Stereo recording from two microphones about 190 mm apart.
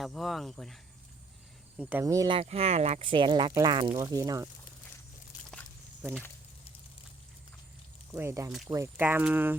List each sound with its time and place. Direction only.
0.0 s speech: centre (ahead or behind)
1.8 s speech: 10° right (ahead or behind)
5.5 s a sound: 5° left (ahead or behind)
8.1 s speech: 15° right (ahead or behind)